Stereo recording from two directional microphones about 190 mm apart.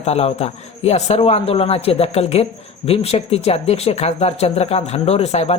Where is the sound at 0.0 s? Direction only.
35° left (ahead or behind).